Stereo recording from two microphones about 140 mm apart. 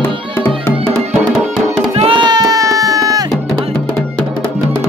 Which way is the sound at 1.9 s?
40° right (ahead or behind).